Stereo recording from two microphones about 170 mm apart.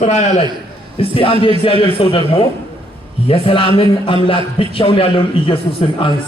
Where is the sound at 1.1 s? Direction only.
30° left (ahead or behind).